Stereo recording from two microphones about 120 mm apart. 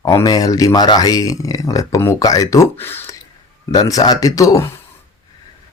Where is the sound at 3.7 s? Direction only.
30° left (ahead or behind).